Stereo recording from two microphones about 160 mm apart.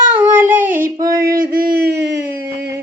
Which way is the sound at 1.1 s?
60° right (ahead or behind).